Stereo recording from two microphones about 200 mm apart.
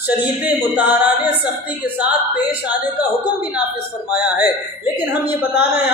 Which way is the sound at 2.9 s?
10° right (ahead or behind).